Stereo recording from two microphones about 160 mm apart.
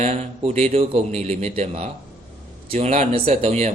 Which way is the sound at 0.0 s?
45° right (ahead or behind).